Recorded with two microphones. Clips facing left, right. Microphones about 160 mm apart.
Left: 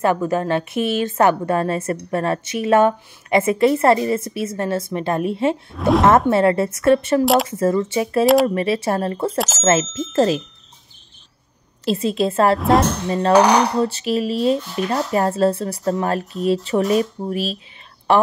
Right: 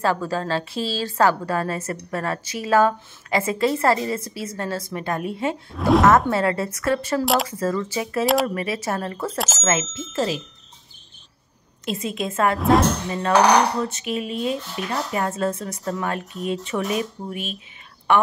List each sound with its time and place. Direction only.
0.0 s a woman's voice: 20° left (ahead or behind)
5.7 s speech: centre (ahead or behind)
6.0 s a woman's voice: 25° left (ahead or behind)
10.1 s speech: 45° left (ahead or behind)
11.8 s speech: 30° left (ahead or behind)
12.5 s speech: centre (ahead or behind)
13.7 s speech: 30° left (ahead or behind)